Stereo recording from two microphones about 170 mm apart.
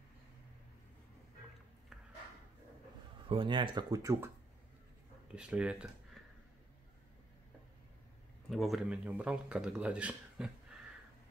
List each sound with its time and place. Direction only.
3.3 s speech: 30° right (ahead or behind)
5.3 s speech: 5° right (ahead or behind)
8.5 s speech: centre (ahead or behind)